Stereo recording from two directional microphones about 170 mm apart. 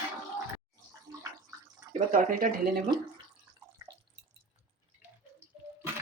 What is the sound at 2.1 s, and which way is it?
Speech, 55° right (ahead or behind).